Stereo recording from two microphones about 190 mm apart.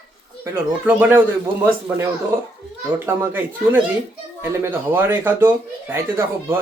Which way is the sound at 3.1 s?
10° right (ahead or behind).